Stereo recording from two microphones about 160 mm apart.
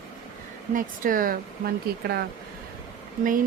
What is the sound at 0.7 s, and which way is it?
Speech, 55° right (ahead or behind).